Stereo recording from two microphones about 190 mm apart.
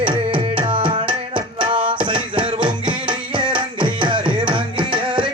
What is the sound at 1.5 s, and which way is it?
Music, 25° right (ahead or behind).